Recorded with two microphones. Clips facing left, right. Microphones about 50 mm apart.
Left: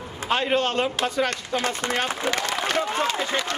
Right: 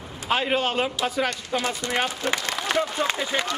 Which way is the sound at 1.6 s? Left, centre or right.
Left.